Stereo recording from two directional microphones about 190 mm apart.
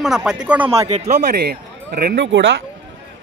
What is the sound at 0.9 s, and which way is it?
Speech, 35° right (ahead or behind).